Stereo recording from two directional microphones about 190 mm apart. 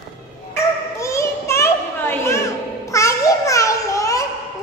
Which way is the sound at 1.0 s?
15° left (ahead or behind).